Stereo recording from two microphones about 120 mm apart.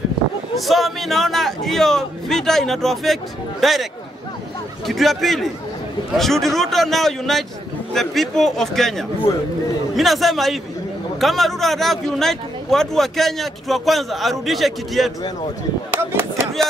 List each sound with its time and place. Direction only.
0.6 s speech: centre (ahead or behind)
4.8 s speech: centre (ahead or behind)
15.9 s chop: 20° right (ahead or behind)